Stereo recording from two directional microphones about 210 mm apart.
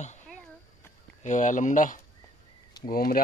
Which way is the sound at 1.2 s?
35° left (ahead or behind).